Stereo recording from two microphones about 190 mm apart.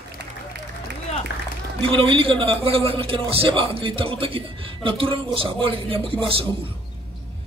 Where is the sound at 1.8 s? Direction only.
30° right (ahead or behind).